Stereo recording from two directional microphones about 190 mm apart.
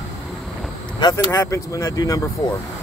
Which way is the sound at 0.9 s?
20° left (ahead or behind).